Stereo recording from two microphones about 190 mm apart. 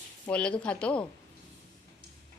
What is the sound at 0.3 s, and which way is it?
Speech, 5° left (ahead or behind).